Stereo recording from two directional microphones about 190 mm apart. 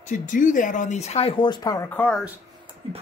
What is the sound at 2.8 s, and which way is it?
Speech, 30° right (ahead or behind).